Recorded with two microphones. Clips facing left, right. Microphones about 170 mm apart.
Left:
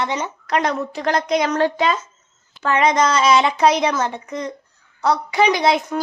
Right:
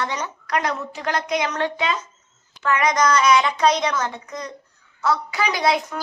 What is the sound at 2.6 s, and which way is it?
A woman's voice, 30° left (ahead or behind).